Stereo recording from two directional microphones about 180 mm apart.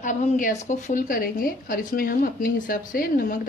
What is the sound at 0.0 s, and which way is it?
A woman's voice, 45° left (ahead or behind).